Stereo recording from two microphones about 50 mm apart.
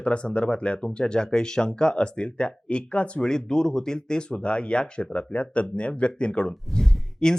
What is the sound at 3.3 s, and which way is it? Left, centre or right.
Speech, centre.